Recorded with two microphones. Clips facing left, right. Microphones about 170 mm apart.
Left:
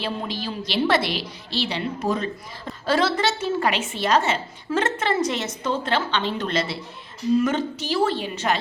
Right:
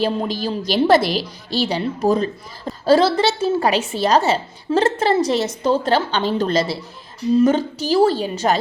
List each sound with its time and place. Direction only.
0.0 s a woman's voice: 40° right (ahead or behind)